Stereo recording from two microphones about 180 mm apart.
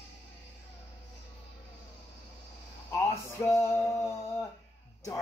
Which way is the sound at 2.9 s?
15° left (ahead or behind).